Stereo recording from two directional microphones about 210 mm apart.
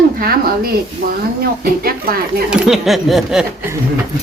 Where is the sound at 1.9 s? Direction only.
45° right (ahead or behind).